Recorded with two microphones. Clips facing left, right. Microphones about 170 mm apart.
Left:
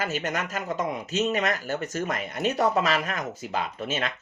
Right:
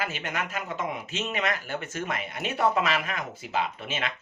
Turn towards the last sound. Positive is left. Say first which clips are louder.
# left 3 dB
turn(degrees=40)  # may be behind; listen again after turning